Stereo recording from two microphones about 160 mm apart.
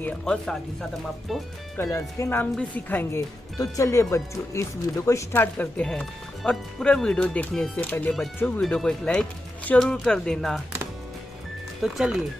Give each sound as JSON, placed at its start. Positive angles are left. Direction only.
{"t": 0.0, "sound": "speech", "side_deg": 5}
{"t": 1.8, "sound": "speech", "side_deg": 15}
{"t": 11.8, "sound": "speech", "side_deg": 0}